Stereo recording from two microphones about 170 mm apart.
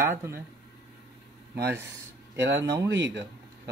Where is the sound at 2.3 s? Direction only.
90° right.